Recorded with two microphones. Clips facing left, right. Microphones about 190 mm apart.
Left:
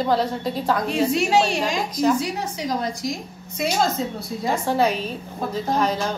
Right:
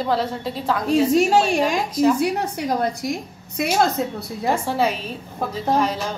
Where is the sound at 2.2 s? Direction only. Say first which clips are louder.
Right 4 dB; 60° right (ahead or behind).